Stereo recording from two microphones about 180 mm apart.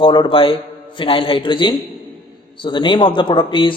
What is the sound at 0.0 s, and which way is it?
Speech, 25° left (ahead or behind).